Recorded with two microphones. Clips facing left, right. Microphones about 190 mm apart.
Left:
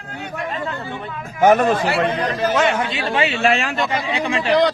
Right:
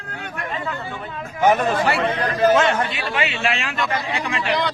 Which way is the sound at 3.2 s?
40° left (ahead or behind).